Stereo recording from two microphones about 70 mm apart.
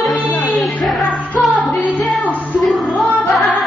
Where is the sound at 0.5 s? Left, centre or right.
Centre.